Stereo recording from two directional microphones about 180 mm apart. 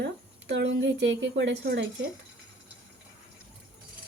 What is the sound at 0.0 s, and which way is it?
Speech, 70° right (ahead or behind).